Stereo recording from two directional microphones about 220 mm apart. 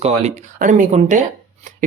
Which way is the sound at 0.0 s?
30° right (ahead or behind).